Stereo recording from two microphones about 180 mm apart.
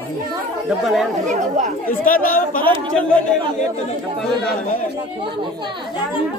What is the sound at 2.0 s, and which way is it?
Speech, 50° left (ahead or behind).